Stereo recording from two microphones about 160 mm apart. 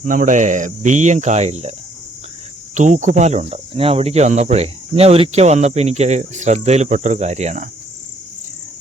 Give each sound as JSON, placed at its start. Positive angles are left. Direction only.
{"t": 0.0, "sound": "speech", "side_deg": -55}
{"t": 2.7, "sound": "speech", "side_deg": -50}